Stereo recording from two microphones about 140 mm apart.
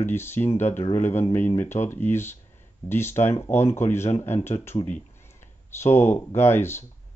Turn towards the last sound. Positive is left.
turn(degrees=15)  # may be behind; listen again after turning